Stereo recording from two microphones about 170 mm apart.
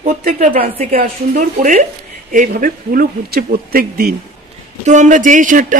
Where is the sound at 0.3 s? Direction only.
50° right (ahead or behind).